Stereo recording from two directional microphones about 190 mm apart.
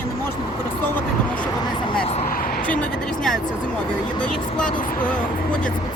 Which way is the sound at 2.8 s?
Centre (ahead or behind).